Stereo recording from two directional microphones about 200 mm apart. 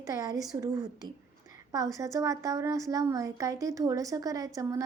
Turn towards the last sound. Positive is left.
turn(degrees=-15)  # may be behind; listen again after turning